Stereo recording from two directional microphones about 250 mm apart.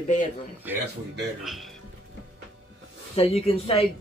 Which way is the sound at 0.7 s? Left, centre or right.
Centre.